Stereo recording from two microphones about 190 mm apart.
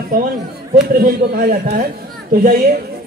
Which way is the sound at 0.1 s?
45° right (ahead or behind).